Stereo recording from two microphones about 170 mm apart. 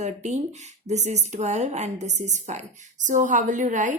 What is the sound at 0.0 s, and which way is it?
A woman's voice, 40° right (ahead or behind).